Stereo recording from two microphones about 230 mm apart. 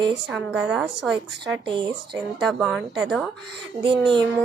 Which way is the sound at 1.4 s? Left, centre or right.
Right.